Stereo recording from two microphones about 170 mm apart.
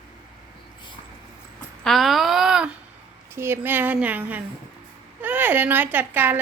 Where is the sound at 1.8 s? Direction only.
Centre (ahead or behind).